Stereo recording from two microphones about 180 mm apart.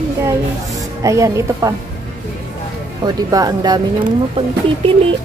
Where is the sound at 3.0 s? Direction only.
20° right (ahead or behind).